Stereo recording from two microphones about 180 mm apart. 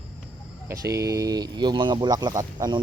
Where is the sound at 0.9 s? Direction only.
20° right (ahead or behind).